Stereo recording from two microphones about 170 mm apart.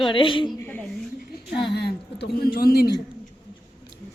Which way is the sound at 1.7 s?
80° left.